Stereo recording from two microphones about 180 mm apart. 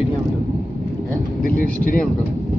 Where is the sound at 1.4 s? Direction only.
50° left (ahead or behind).